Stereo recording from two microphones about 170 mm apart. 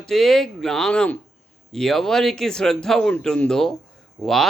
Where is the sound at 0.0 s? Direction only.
Centre (ahead or behind).